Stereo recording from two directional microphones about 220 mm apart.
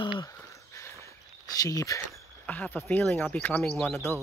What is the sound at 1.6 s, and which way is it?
Speech, 15° left (ahead or behind).